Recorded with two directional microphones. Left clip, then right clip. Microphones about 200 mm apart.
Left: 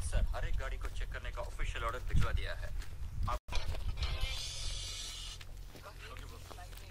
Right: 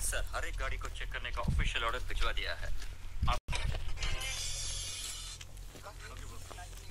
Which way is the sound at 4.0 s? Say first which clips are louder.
Right 3 dB; 45° right (ahead or behind).